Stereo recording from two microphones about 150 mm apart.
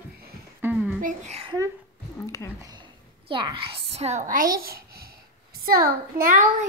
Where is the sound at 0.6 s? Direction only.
15° right (ahead or behind).